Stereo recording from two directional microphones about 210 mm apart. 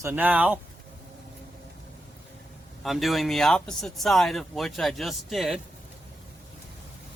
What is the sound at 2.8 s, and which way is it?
Speech, centre (ahead or behind).